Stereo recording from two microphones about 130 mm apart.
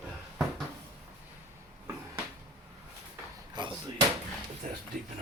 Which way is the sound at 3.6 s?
35° right (ahead or behind).